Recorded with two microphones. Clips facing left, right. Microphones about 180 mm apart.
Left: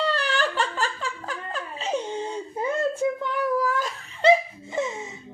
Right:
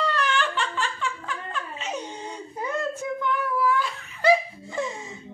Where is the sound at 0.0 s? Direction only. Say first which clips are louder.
Left 1 dB; 35° left (ahead or behind).